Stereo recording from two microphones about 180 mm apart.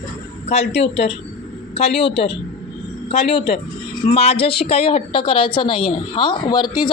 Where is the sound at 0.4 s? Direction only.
35° left (ahead or behind).